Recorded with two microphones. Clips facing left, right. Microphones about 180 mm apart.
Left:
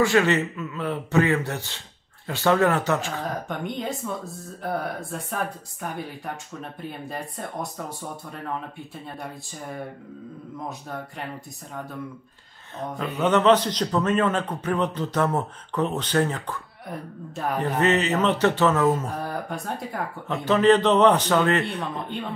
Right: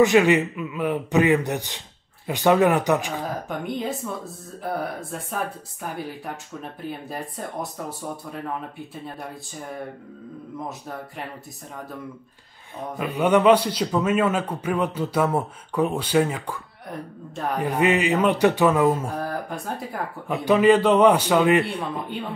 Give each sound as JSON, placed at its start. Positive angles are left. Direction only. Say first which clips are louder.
{"t": 0.0, "sound": "a man's voice", "louder": "right 4 dB", "side_deg": -15}
{"t": 3.4, "sound": "speech", "louder": "right 2 dB", "side_deg": -5}
{"t": 10.7, "sound": "speech", "louder": "even", "side_deg": 0}
{"t": 13.2, "sound": "a man's voice", "louder": "right 2 dB", "side_deg": -10}
{"t": 16.9, "sound": "speech", "louder": "right 1 dB", "side_deg": 0}
{"t": 17.6, "sound": "a man's voice", "louder": "right 1 dB", "side_deg": -10}